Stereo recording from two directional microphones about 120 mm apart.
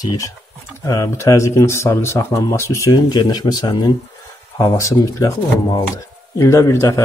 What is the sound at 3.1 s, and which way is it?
Speech, 35° left (ahead or behind).